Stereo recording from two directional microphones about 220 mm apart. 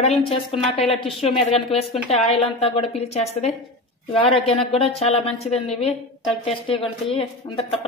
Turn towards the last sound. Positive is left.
turn(degrees=25)  # may be behind; listen again after turning